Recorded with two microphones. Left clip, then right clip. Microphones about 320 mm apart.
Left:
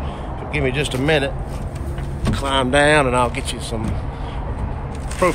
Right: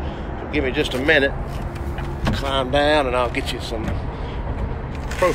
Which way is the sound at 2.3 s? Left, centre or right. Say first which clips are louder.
Left 3 dB; left.